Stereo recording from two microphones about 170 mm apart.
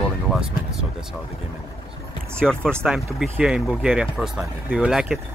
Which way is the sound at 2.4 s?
5° left (ahead or behind).